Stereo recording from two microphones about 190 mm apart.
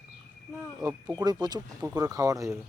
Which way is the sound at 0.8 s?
20° right (ahead or behind).